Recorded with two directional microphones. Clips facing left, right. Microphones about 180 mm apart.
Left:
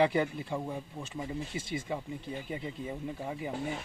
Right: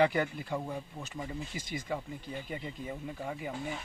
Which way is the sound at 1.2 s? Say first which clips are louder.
Left 3 dB; 25° left (ahead or behind).